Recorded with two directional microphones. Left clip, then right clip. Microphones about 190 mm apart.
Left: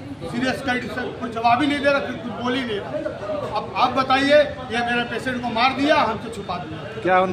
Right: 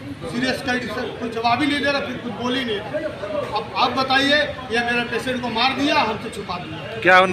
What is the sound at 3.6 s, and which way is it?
A man's voice, 5° left (ahead or behind).